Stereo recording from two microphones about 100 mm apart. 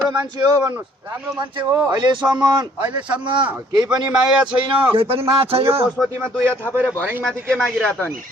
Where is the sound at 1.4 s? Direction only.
50° right (ahead or behind).